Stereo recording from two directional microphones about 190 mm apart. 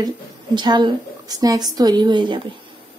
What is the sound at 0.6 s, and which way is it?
A woman's voice, 25° right (ahead or behind).